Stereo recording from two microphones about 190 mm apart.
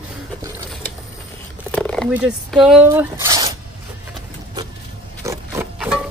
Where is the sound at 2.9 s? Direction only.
15° right (ahead or behind).